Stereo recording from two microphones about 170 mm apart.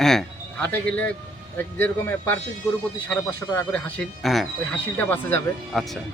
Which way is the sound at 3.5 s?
15° left (ahead or behind).